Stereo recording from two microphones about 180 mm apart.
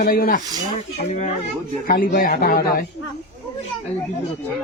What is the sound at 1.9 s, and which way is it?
Speech, 50° left (ahead or behind).